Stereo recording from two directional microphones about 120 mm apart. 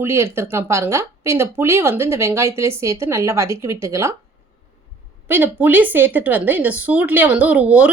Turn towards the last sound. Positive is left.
turn(degrees=-10)  # may be behind; listen again after turning